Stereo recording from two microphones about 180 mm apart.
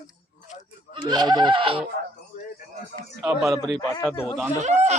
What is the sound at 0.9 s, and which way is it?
Speech, 25° right (ahead or behind).